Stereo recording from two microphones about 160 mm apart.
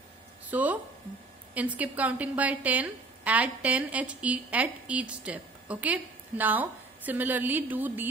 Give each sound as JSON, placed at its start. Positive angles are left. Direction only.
{"t": 0.5, "sound": "a woman's voice", "side_deg": -10}